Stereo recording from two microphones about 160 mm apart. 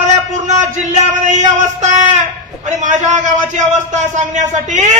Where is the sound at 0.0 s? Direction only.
50° right (ahead or behind).